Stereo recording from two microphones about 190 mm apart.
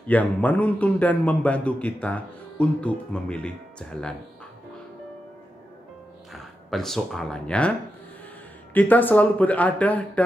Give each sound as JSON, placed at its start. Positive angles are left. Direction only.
{"t": 0.0, "sound": "a man's voice", "side_deg": 10}
{"t": 6.3, "sound": "speech", "side_deg": 0}
{"t": 8.7, "sound": "a man's voice", "side_deg": 10}